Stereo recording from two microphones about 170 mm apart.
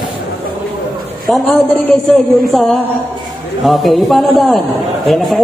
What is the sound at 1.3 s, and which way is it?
A man's voice, centre (ahead or behind).